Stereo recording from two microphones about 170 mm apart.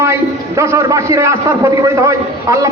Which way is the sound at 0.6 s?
15° right (ahead or behind).